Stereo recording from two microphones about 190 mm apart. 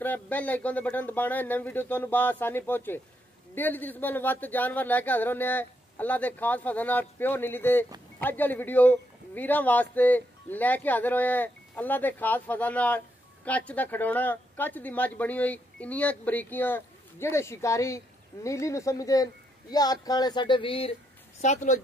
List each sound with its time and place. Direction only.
0.0 s speech: 10° left (ahead or behind); by 20.9 s 30° left (ahead or behind)
21.4 s speech: 40° left (ahead or behind)